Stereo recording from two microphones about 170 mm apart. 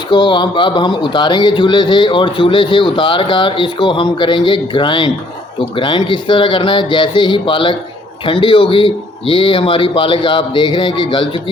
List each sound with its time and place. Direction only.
0.1 s a man's voice: 30° left (ahead or behind)